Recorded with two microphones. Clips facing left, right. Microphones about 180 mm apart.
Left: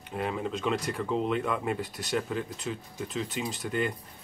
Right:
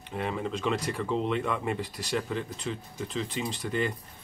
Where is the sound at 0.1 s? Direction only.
Centre (ahead or behind).